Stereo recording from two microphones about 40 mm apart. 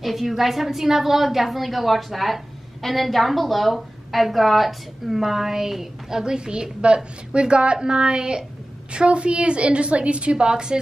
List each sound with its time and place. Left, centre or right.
0.0 s a woman's voice: centre; by 10.3 s right
10.3 s a woman's voice: centre